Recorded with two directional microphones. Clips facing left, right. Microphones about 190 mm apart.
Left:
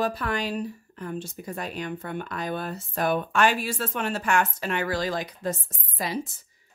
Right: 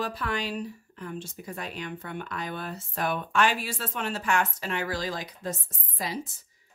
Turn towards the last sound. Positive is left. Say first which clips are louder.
# left 3 dB
turn(degrees=65)  # may be behind; listen again after turning